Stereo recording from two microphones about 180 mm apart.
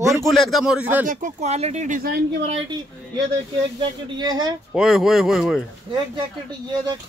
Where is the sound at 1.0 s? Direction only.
45° right (ahead or behind).